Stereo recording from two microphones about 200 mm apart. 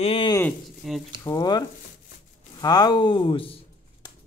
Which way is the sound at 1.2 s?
15° left (ahead or behind).